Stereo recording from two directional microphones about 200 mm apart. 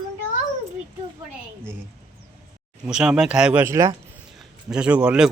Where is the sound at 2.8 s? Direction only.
5° right (ahead or behind).